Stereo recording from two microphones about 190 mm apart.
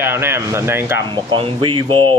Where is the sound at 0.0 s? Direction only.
10° right (ahead or behind).